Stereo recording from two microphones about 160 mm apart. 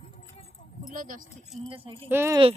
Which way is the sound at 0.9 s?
60° right (ahead or behind).